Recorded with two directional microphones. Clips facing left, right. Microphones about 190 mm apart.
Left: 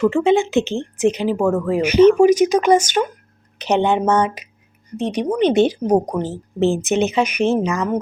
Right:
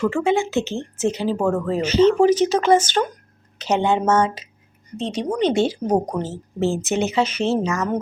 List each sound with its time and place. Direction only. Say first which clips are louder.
0.0 s a woman's voice: left 4 dB; 20° left (ahead or behind)